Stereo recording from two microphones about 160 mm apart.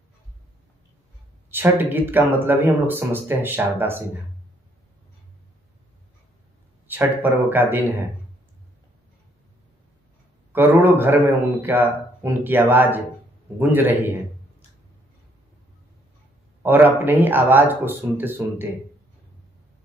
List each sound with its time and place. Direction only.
1.5 s speech: 15° right (ahead or behind)
6.9 s speech: 10° right (ahead or behind)
10.5 s speech: 15° right (ahead or behind)
16.6 s speech: 10° right (ahead or behind)